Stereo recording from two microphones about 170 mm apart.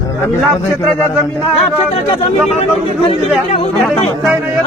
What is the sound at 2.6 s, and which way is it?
Speech, 35° left (ahead or behind).